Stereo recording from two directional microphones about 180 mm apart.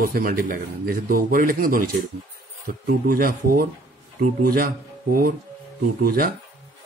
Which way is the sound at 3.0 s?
50° right (ahead or behind).